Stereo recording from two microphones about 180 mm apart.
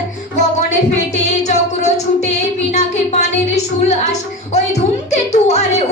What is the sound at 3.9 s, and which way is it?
A woman's voice, 40° left (ahead or behind).